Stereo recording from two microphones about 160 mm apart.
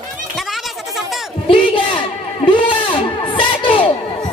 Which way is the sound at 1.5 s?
30° left (ahead or behind).